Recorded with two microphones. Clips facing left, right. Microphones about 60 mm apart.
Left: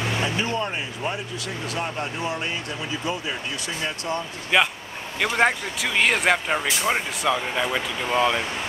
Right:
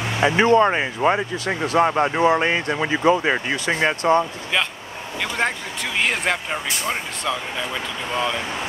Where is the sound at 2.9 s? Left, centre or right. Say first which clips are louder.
Right 11 dB; right.